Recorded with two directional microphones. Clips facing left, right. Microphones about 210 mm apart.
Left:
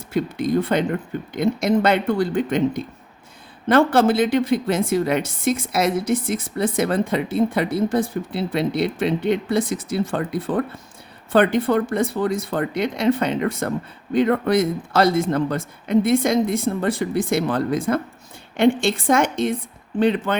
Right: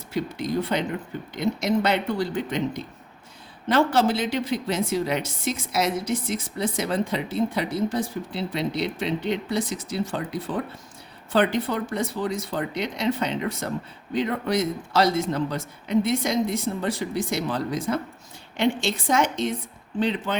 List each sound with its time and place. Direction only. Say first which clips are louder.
0.1 s a woman's voice: left 6 dB; 55° left (ahead or behind)